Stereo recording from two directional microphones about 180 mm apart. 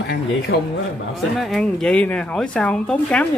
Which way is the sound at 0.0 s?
70° left (ahead or behind).